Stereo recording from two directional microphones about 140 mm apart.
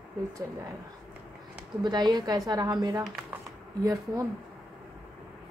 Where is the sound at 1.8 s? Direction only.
30° right (ahead or behind).